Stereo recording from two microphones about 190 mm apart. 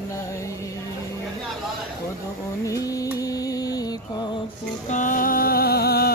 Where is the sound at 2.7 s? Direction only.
20° left (ahead or behind).